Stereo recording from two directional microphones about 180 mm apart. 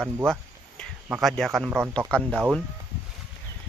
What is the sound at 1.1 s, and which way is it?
Speech, centre (ahead or behind).